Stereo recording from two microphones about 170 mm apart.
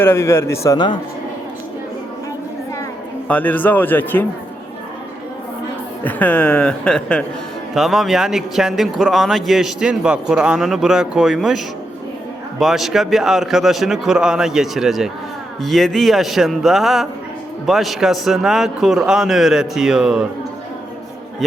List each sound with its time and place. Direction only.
0.0 s speech: 15° left (ahead or behind)
3.2 s speech: 10° left (ahead or behind)
6.1 s speech: 10° left (ahead or behind)